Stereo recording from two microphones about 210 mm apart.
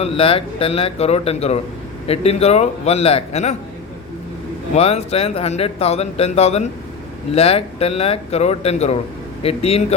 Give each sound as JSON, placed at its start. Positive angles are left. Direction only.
{"t": 0.0, "sound": "speech", "side_deg": 25}
{"t": 4.7, "sound": "speech", "side_deg": 30}